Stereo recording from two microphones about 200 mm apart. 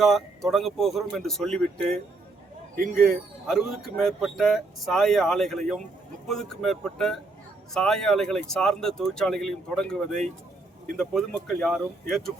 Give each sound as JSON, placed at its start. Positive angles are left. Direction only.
{"t": 0.0, "sound": "speech", "side_deg": 0}
{"t": 2.7, "sound": "speech", "side_deg": -40}
{"t": 3.0, "sound": "speech", "side_deg": 0}